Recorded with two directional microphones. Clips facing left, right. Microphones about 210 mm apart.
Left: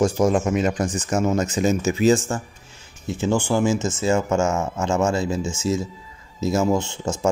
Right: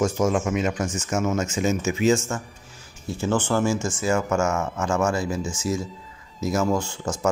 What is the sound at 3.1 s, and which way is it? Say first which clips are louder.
Speech: left 2 dB; 15° left (ahead or behind).